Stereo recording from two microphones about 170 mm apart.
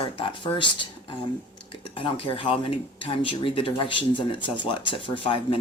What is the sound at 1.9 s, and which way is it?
Speech, 30° left (ahead or behind).